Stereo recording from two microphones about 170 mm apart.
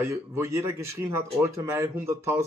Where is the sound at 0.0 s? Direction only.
15° right (ahead or behind).